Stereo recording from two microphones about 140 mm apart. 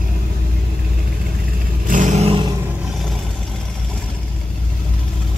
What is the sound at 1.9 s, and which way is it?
Vehicle, 65° right (ahead or behind).